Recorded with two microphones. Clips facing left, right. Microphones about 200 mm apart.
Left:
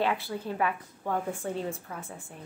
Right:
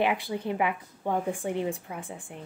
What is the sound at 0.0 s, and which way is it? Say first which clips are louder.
A woman's voice: right 2 dB; 15° right (ahead or behind).